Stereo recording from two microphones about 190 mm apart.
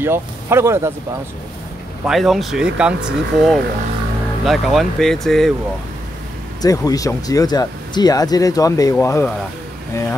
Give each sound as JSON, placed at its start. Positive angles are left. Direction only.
{"t": 0.0, "sound": "speech", "side_deg": -10}
{"t": 2.0, "sound": "speech", "side_deg": 0}
{"t": 6.6, "sound": "speech", "side_deg": 20}